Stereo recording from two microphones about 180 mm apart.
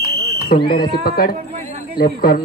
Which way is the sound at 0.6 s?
30° left (ahead or behind).